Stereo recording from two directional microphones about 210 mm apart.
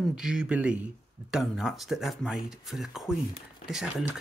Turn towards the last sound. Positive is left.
turn(degrees=-5)  # may be behind; listen again after turning